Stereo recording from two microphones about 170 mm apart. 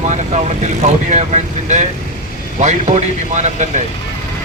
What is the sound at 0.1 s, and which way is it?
A man's voice, 40° right (ahead or behind).